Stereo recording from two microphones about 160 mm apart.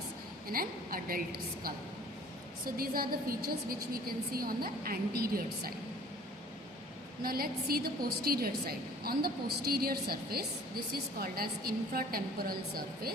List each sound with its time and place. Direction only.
0.5 s a woman's voice: 65° right (ahead or behind)
2.7 s a woman's voice: 65° right (ahead or behind)
7.2 s a woman's voice: 70° right (ahead or behind)